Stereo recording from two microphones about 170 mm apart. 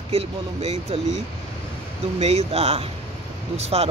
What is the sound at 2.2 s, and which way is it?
Speech, 40° right (ahead or behind).